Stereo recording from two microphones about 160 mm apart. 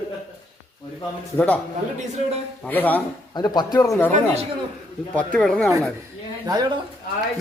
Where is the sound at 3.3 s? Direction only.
25° left (ahead or behind).